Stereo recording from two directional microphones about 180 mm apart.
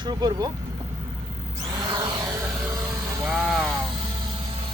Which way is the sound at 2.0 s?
25° right (ahead or behind).